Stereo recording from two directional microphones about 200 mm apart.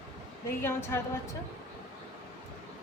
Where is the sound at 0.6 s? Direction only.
10° left (ahead or behind).